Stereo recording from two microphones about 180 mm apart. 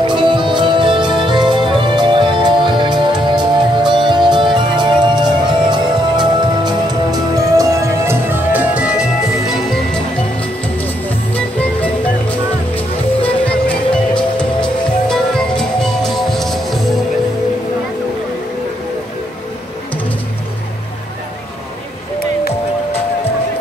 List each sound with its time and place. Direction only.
0.0 s music: 25° right (ahead or behind); by 9.0 s 5° right (ahead or behind)
11.1 s music: 10° left (ahead or behind)